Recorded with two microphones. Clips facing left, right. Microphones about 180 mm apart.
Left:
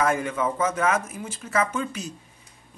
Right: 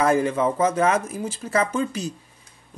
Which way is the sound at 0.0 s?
30° right (ahead or behind).